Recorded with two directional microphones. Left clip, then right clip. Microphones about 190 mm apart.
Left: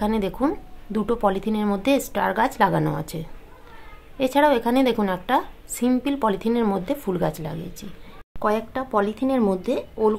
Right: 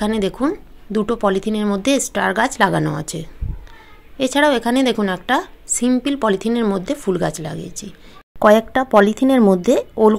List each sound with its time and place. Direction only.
0.0 s a woman's voice: 20° right (ahead or behind)
8.4 s speech: 45° right (ahead or behind)